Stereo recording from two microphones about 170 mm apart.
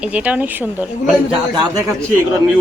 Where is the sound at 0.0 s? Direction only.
10° right (ahead or behind).